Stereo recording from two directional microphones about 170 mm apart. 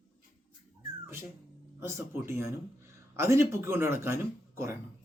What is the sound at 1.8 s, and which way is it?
Speech, 15° right (ahead or behind).